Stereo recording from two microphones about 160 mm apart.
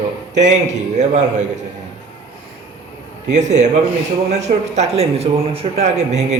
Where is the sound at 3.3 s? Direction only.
45° right (ahead or behind).